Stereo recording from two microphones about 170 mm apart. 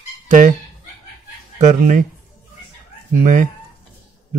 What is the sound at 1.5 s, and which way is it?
Speech, 45° right (ahead or behind).